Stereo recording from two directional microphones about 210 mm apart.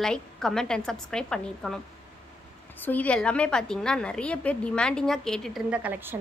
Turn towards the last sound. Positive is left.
turn(degrees=-10)  # may be behind; listen again after turning